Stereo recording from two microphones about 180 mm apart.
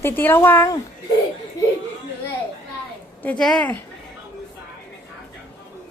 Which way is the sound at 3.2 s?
5° left (ahead or behind).